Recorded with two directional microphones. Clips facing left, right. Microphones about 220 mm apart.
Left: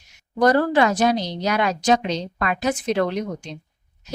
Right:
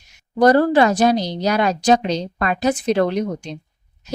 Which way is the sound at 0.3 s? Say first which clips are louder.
Right 4 dB; 30° right (ahead or behind).